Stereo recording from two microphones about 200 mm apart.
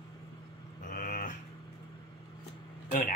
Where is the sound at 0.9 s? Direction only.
45° left (ahead or behind).